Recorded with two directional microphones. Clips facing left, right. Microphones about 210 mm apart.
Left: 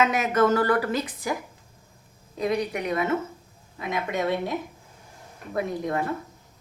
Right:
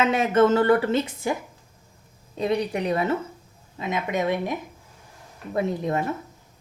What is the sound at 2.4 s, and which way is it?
Speech, 30° right (ahead or behind).